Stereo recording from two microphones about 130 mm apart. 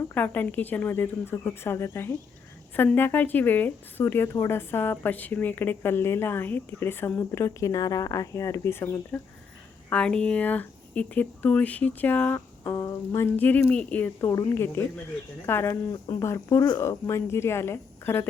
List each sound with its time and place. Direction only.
0.1 s speech: 15° left (ahead or behind)
9.9 s speech: 5° left (ahead or behind)
12.7 s speech: 25° left (ahead or behind)